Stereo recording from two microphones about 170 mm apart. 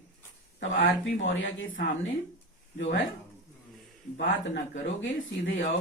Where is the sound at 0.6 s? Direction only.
90° left.